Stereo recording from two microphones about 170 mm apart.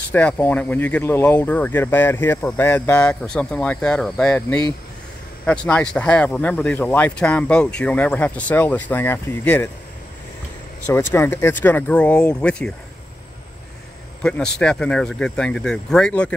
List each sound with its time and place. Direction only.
0.1 s speech: 10° left (ahead or behind)
10.9 s speech: 15° left (ahead or behind)
14.2 s speech: 5° left (ahead or behind)